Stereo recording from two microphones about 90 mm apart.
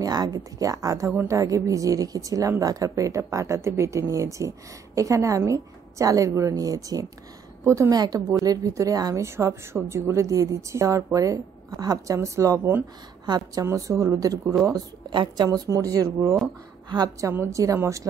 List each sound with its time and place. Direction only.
0.0 s a woman's voice: 45° right (ahead or behind)
7.9 s a woman's voice: 45° right (ahead or behind)
12.2 s a woman's voice: 30° right (ahead or behind)
13.2 s a woman's voice: 50° right (ahead or behind)
13.7 s a woman's voice: 35° right (ahead or behind)
15.0 s a woman's voice: 55° right (ahead or behind); by 18.0 s 35° right (ahead or behind)